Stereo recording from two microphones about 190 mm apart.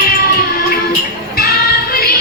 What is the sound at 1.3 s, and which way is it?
Child singing, 50° left (ahead or behind).